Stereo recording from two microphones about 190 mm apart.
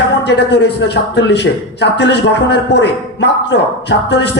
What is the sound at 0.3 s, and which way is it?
A man's voice, 65° left (ahead or behind).